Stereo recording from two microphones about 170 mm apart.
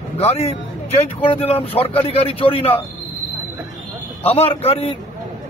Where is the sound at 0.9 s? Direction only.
35° left (ahead or behind).